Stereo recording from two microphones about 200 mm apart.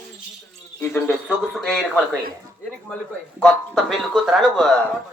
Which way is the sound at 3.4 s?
Centre (ahead or behind).